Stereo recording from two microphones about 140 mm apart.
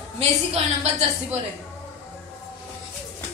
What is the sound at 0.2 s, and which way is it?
Speech, 45° right (ahead or behind).